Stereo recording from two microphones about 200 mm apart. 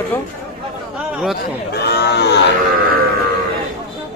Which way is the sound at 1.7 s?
55° left (ahead or behind).